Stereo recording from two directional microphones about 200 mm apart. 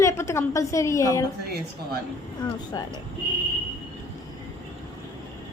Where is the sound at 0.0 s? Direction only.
15° left (ahead or behind).